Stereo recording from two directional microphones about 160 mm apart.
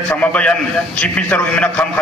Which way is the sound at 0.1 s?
10° left (ahead or behind).